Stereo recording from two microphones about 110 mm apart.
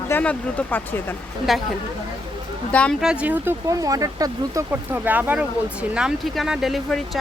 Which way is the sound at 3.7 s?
30° right (ahead or behind).